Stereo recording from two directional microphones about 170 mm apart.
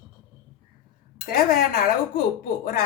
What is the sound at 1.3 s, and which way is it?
Speech, 60° left (ahead or behind).